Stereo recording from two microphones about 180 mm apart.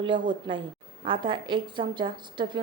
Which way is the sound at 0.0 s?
25° right (ahead or behind).